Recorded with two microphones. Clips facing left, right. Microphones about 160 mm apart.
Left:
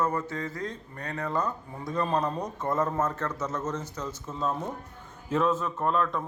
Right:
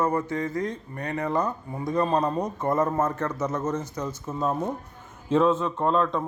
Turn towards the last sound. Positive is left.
turn(degrees=-30)  # may be behind; listen again after turning